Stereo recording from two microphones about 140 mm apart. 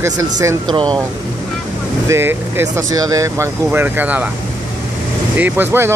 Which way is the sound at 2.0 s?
15° right (ahead or behind).